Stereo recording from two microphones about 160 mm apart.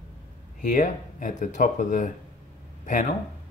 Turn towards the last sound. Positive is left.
turn(degrees=50)  # may be behind; listen again after turning